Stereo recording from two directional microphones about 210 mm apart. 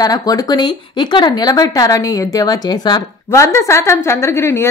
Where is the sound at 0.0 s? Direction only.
20° left (ahead or behind).